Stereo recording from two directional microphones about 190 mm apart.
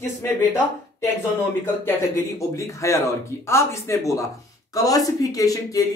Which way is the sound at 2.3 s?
15° left (ahead or behind).